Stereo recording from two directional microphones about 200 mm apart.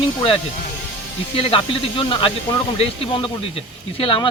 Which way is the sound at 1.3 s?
25° left (ahead or behind).